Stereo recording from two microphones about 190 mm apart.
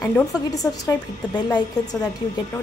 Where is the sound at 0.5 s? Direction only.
20° left (ahead or behind).